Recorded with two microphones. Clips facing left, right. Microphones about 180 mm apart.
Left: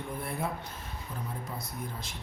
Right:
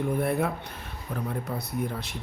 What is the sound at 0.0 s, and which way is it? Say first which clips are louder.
A man's voice: right 9 dB; 65° right (ahead or behind).